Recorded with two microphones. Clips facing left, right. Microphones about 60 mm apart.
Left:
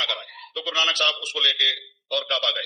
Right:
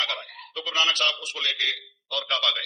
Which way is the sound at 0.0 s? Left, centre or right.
Right.